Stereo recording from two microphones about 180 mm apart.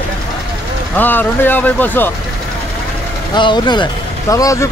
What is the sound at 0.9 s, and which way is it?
Speech, 10° left (ahead or behind).